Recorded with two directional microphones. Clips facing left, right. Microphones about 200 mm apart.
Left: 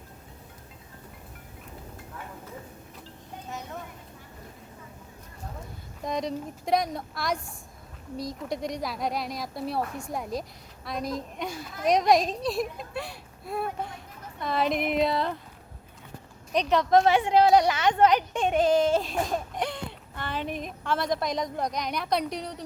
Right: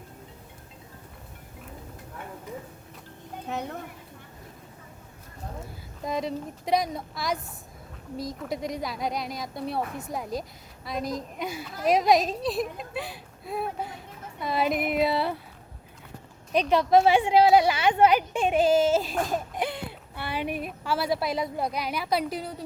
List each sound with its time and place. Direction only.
3.5 s speech: 60° right (ahead or behind)
6.0 s a woman's voice: 5° right (ahead or behind)
16.6 s a woman's voice: 10° right (ahead or behind)